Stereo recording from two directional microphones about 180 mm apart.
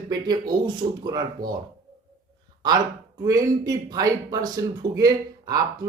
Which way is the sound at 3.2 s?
20° right (ahead or behind).